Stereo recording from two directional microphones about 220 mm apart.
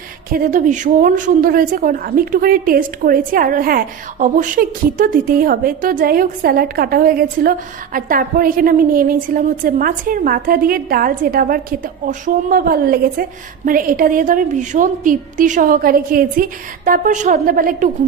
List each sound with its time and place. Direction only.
0.3 s a woman's voice: 40° right (ahead or behind)